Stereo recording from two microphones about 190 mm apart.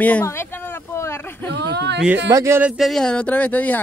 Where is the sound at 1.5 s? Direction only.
60° right (ahead or behind).